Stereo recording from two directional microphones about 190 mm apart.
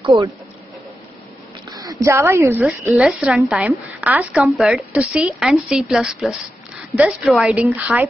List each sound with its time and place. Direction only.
1.7 s a woman's voice: 20° right (ahead or behind)